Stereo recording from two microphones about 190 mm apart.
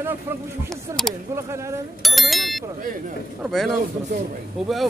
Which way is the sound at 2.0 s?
Centre (ahead or behind).